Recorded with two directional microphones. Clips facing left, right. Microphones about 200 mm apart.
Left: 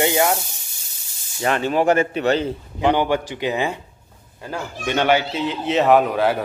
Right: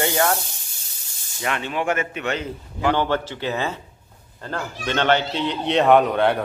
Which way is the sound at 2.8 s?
15° left (ahead or behind).